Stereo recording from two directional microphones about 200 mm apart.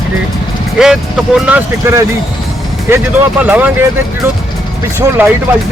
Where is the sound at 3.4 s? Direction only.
10° right (ahead or behind).